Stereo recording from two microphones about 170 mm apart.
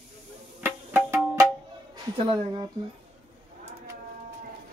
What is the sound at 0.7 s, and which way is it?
Music, 15° right (ahead or behind).